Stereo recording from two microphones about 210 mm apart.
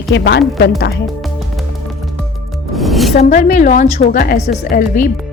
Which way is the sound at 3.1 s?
35° left (ahead or behind).